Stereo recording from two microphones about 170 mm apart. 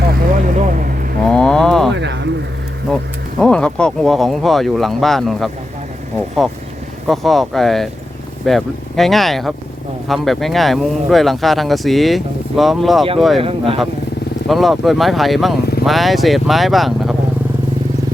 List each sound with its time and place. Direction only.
0.1 s vehicle: 55° right (ahead or behind)
1.2 s vehicle: 5° left (ahead or behind)
1.9 s bird: 90° right
2.9 s a sound: 5° left (ahead or behind)
3.4 s speech: 5° left (ahead or behind)
7.1 s speech: centre (ahead or behind)
13.4 s speech: 35° right (ahead or behind)
14.4 s speech: centre (ahead or behind)